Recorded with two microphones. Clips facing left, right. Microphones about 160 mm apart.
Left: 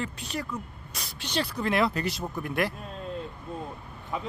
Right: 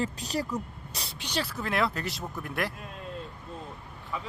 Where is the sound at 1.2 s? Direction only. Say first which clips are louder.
Left 4 dB; 5° right (ahead or behind).